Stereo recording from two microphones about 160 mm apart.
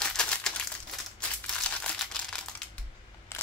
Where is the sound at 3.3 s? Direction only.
15° left (ahead or behind).